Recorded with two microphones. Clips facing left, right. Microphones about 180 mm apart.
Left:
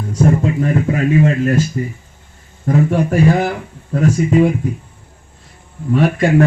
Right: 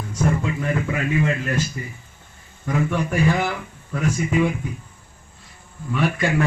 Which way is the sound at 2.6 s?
40° left (ahead or behind).